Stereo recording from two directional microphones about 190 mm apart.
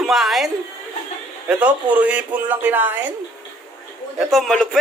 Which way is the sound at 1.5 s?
5° right (ahead or behind).